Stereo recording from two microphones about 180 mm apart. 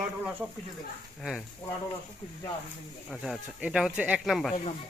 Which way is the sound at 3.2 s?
5° right (ahead or behind).